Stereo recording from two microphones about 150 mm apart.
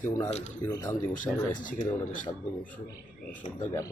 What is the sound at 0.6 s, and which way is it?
Speech, 25° left (ahead or behind).